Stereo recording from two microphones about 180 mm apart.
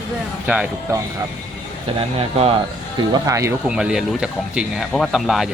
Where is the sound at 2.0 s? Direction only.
35° right (ahead or behind).